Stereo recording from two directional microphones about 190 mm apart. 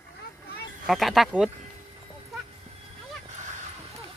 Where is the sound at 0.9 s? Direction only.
Centre (ahead or behind).